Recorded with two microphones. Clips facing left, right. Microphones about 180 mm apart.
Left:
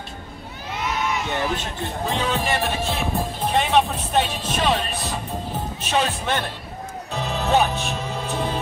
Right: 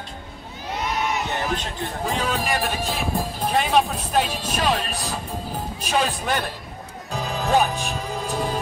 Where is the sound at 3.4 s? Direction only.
5° right (ahead or behind).